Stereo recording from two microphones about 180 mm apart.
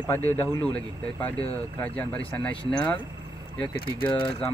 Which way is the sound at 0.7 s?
10° left (ahead or behind).